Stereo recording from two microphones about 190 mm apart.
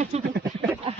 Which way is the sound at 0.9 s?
30° right (ahead or behind).